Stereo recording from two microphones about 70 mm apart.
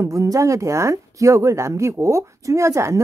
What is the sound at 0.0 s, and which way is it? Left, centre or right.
Speech, right.